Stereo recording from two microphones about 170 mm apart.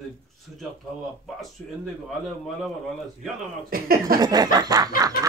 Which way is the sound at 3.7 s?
60° right (ahead or behind).